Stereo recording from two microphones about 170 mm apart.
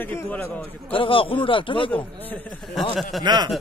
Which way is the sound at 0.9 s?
30° left (ahead or behind).